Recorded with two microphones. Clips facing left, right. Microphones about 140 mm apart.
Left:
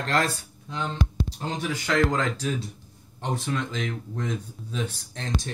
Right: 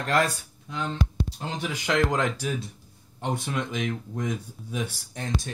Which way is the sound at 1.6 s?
15° right (ahead or behind).